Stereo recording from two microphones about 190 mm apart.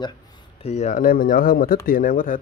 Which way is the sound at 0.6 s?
35° left (ahead or behind).